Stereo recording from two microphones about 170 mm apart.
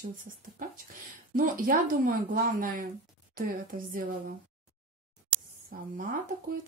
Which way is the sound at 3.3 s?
55° right (ahead or behind).